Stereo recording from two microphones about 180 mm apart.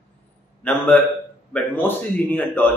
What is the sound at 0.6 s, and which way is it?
Speech, 10° left (ahead or behind).